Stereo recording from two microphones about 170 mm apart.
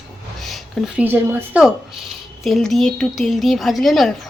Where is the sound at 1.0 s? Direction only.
10° right (ahead or behind).